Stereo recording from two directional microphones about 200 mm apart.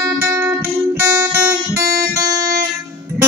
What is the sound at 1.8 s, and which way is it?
Guitar, 50° right (ahead or behind).